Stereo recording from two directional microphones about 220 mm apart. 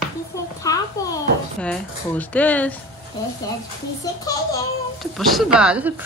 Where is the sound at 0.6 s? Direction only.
15° left (ahead or behind).